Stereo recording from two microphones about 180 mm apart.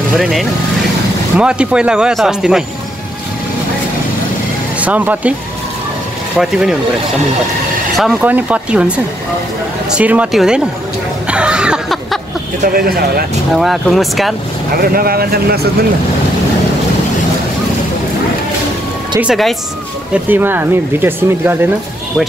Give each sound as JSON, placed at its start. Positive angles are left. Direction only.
{"t": 0.2, "sound": "speech", "side_deg": 0}
{"t": 4.7, "sound": "speech", "side_deg": -10}
{"t": 6.3, "sound": "speech", "side_deg": 0}
{"t": 8.0, "sound": "speech", "side_deg": -5}
{"t": 11.2, "sound": "a sound", "side_deg": -5}
{"t": 12.7, "sound": "speech", "side_deg": -55}
{"t": 13.6, "sound": "speech", "side_deg": 0}
{"t": 14.8, "sound": "speech", "side_deg": -55}
{"t": 19.1, "sound": "speech", "side_deg": -5}